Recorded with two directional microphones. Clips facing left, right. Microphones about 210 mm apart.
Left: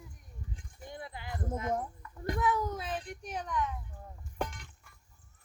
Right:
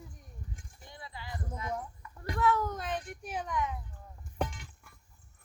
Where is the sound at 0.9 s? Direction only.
50° left (ahead or behind).